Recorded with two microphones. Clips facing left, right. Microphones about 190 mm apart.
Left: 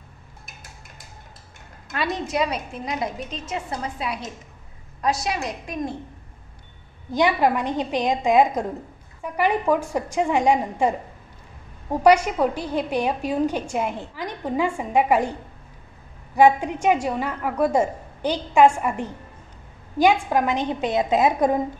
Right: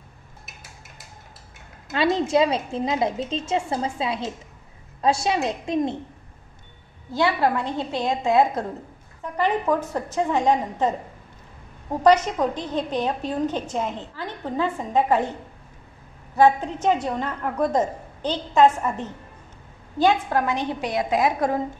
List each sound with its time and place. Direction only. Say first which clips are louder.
1.9 s a woman's voice: right 5 dB; 25° right (ahead or behind)
7.1 s a woman's voice: left 2 dB; 15° left (ahead or behind)
16.3 s a woman's voice: left 1 dB; 10° left (ahead or behind)